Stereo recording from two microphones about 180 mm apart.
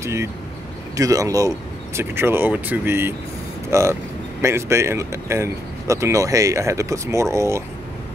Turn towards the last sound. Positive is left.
turn(degrees=-15)  # may be behind; listen again after turning